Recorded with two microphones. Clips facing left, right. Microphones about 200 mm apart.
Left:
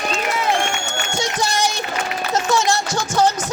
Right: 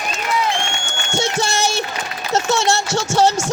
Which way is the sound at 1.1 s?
25° right (ahead or behind).